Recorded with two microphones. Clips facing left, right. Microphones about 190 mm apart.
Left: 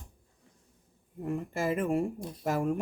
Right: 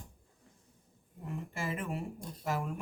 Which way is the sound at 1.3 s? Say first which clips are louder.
Left 8 dB; 40° left (ahead or behind).